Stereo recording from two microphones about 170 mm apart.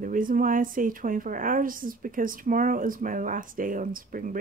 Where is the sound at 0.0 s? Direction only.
55° right (ahead or behind).